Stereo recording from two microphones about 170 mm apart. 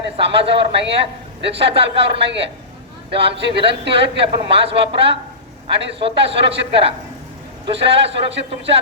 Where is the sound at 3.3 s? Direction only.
90° right.